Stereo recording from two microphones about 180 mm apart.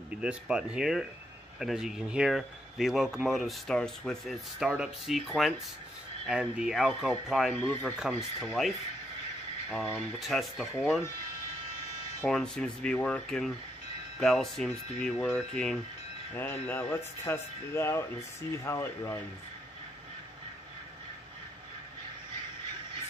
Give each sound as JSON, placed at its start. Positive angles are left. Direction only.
{"t": 0.2, "sound": "speech", "side_deg": -5}
{"t": 9.7, "sound": "speech", "side_deg": 10}
{"t": 12.3, "sound": "speech", "side_deg": 5}